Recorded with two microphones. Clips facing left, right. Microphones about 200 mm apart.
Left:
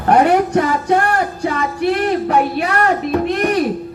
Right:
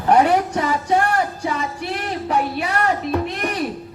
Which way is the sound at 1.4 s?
60° left (ahead or behind).